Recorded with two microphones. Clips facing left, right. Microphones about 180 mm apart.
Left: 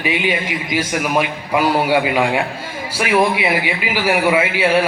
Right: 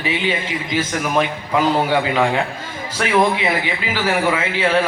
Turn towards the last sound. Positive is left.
turn(degrees=10)  # may be behind; listen again after turning